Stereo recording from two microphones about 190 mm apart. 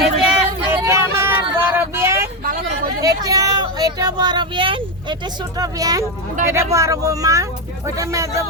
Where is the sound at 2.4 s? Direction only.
50° right (ahead or behind).